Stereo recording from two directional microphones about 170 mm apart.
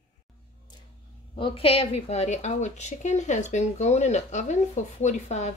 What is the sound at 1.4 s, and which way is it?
A woman's voice, 35° left (ahead or behind).